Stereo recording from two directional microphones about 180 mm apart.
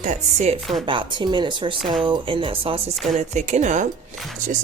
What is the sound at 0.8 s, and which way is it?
Speech, 25° right (ahead or behind).